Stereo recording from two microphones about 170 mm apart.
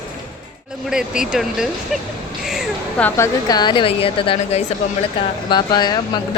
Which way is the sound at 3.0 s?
15° left (ahead or behind).